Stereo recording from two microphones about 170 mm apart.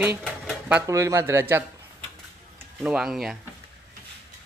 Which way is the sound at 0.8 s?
20° right (ahead or behind).